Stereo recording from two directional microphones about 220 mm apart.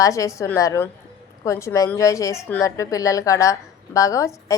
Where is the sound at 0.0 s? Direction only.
15° left (ahead or behind).